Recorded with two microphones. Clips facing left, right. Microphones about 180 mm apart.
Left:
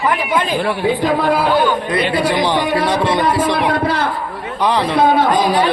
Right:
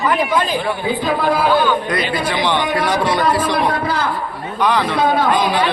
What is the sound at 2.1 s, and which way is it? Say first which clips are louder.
A man's voice: left 4 dB; 30° left (ahead or behind).